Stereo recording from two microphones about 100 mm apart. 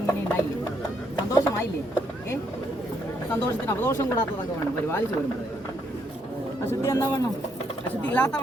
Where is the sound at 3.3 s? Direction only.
25° left (ahead or behind).